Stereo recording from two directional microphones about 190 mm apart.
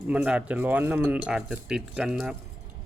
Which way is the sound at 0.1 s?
5° right (ahead or behind).